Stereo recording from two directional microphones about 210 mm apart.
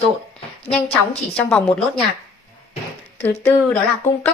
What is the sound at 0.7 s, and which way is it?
A woman's voice, 5° left (ahead or behind).